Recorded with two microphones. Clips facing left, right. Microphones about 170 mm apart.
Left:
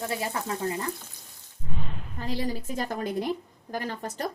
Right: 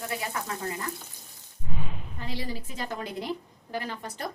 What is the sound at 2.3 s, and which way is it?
A woman's voice, 45° left (ahead or behind).